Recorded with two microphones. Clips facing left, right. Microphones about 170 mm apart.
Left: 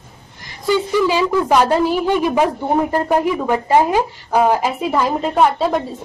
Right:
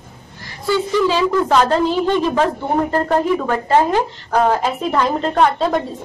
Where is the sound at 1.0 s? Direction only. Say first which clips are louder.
Even; 10° left (ahead or behind).